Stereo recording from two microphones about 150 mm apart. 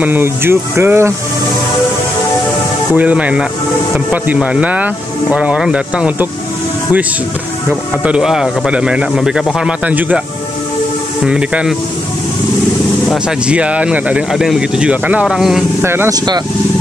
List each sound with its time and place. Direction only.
0.0 s speech: 15° right (ahead or behind)
3.0 s speech: 10° right (ahead or behind)
8.0 s speech: 5° right (ahead or behind)
11.2 s speech: 5° right (ahead or behind)
13.5 s speech: 10° right (ahead or behind)
15.8 s speech: 15° right (ahead or behind)